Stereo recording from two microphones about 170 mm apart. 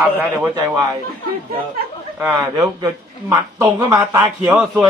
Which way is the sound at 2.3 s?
20° right (ahead or behind).